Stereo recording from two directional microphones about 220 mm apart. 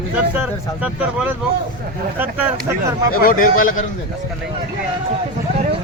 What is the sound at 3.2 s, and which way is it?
Speech, 40° left (ahead or behind).